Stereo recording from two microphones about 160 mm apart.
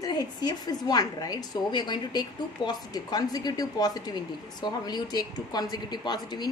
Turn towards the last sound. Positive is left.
turn(degrees=25)  # may be behind; listen again after turning